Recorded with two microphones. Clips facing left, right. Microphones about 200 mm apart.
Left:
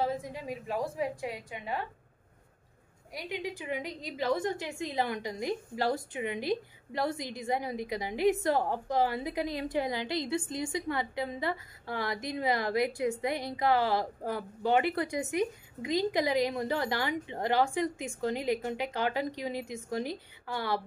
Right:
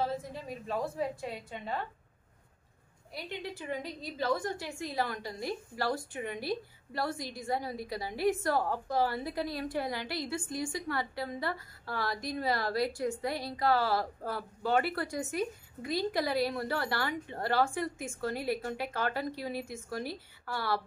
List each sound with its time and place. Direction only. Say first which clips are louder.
0.0 s a woman's voice: left 2 dB; 15° left (ahead or behind)
3.1 s a woman's voice: left 3 dB; 15° left (ahead or behind)